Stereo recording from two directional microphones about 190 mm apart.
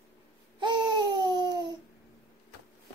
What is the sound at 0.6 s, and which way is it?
Babbling, 25° right (ahead or behind).